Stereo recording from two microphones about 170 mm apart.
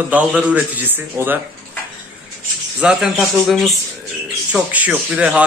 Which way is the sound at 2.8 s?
5° right (ahead or behind).